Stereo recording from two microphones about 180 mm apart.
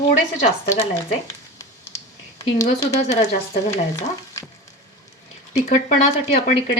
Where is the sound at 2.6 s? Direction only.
50° left (ahead or behind).